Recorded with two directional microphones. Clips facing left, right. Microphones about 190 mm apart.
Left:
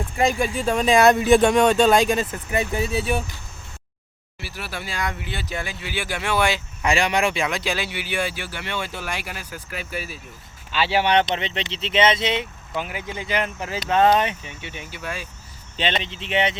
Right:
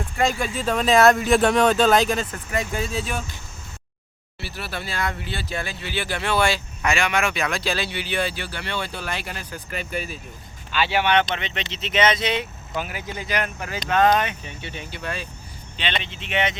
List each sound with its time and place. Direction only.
0.4 s speech: 10° left (ahead or behind)
0.9 s speech: centre (ahead or behind)
2.5 s speech: 20° left (ahead or behind)
4.4 s speech: 10° left (ahead or behind)
6.8 s speech: 35° left (ahead or behind)
7.5 s speech: 15° left (ahead or behind)
10.8 s speech: 30° left (ahead or behind)
14.4 s speech: 10° left (ahead or behind)
15.8 s speech: 40° left (ahead or behind)